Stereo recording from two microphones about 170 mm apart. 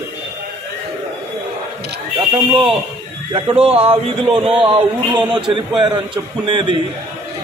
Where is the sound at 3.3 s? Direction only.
30° right (ahead or behind).